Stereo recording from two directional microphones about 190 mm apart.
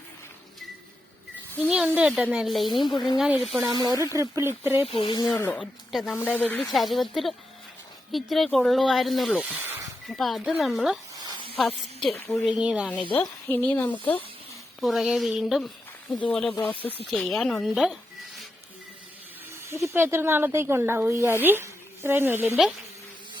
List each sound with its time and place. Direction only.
2.0 s speech: 5° right (ahead or behind)
3.7 s speech: 20° right (ahead or behind)
4.9 s speech: 25° left (ahead or behind)
5.5 s speech: centre (ahead or behind)
9.4 s a sound: 10° right (ahead or behind)
10.1 s speech: centre (ahead or behind)
11.2 s snake: 25° right (ahead or behind)
11.5 s a woman's voice: centre (ahead or behind)
13.1 s speech: 10° left (ahead or behind)
19.9 s speech: 10° right (ahead or behind)